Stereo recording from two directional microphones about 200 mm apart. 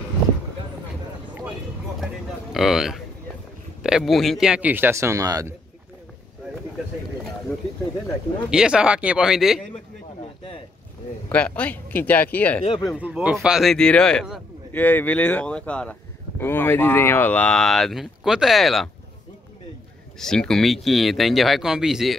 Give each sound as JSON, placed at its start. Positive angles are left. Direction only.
{"t": 2.5, "sound": "speech", "side_deg": 0}
{"t": 8.5, "sound": "speech", "side_deg": -5}
{"t": 11.3, "sound": "speech", "side_deg": 5}
{"t": 12.6, "sound": "speech", "side_deg": 25}
{"t": 12.9, "sound": "speech", "side_deg": -5}
{"t": 20.2, "sound": "speech", "side_deg": 5}